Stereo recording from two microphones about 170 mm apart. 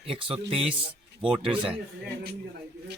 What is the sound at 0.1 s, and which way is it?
Speech, 30° right (ahead or behind).